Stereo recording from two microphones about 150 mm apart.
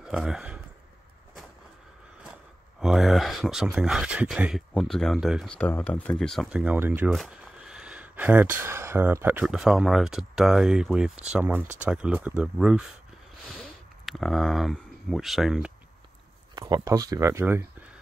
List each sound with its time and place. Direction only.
0.0 s speech: 5° right (ahead or behind)
2.8 s speech: centre (ahead or behind)
5.5 s speech: 10° left (ahead or behind)
14.0 s speech: centre (ahead or behind)
16.5 s speech: 25° right (ahead or behind)